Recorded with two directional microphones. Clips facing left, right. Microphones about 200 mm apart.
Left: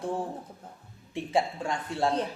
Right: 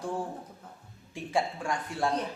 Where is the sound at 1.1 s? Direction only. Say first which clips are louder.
Left 2 dB; 20° left (ahead or behind).